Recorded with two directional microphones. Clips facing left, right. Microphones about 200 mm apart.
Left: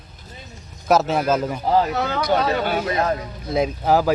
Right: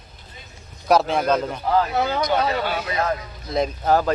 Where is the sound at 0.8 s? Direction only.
Centre (ahead or behind).